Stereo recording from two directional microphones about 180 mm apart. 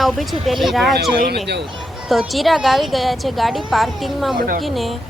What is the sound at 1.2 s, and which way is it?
Speech, 65° right (ahead or behind).